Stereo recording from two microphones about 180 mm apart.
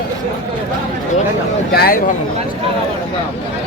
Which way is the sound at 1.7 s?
55° left (ahead or behind).